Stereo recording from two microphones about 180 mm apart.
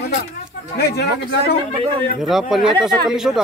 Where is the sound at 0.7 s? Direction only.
65° left (ahead or behind).